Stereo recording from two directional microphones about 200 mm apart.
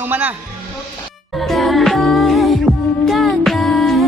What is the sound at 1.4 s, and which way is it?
Music, centre (ahead or behind).